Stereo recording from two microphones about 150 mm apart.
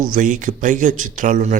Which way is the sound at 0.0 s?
60° right (ahead or behind).